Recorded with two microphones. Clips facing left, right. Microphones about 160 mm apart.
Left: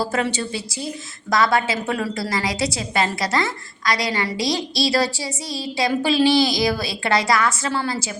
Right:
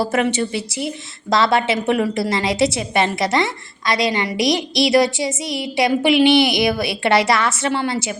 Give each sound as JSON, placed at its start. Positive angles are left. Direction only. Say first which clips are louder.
{"t": 0.2, "sound": "a woman's voice", "louder": "right 4 dB", "side_deg": -25}